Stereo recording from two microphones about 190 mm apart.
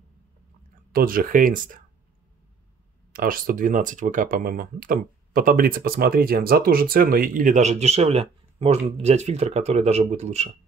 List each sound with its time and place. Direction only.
0.9 s speech: 50° right (ahead or behind)
3.1 s speech: 50° right (ahead or behind)